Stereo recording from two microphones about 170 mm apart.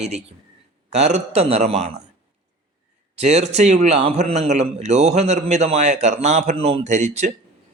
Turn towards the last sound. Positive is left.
turn(degrees=-40)  # may be behind; listen again after turning